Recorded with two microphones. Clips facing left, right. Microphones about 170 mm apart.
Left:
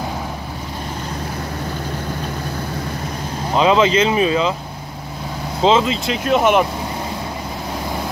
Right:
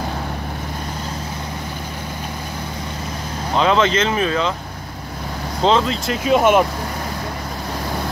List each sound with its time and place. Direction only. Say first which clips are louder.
3.5 s speech: left 2 dB; 5° left (ahead or behind)
5.6 s speech: left 2 dB; 5° left (ahead or behind)